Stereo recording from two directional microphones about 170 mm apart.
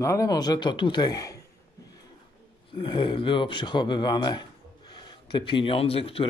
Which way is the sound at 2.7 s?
30° left (ahead or behind).